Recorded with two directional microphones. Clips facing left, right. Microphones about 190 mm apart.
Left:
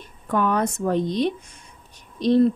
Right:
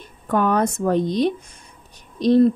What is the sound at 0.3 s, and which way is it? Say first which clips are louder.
Speech: right 3 dB; 40° right (ahead or behind).